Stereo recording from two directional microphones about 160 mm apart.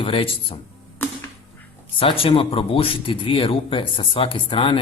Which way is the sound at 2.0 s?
35° left (ahead or behind).